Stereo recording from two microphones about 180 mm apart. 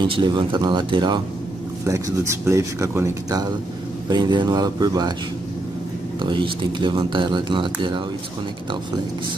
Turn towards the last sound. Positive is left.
turn(degrees=-25)  # may be behind; listen again after turning